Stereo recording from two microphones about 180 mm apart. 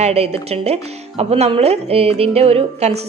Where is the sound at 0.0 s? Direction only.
35° right (ahead or behind).